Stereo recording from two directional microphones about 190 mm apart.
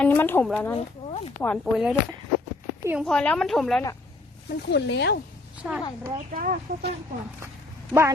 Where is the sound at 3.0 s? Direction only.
5° left (ahead or behind).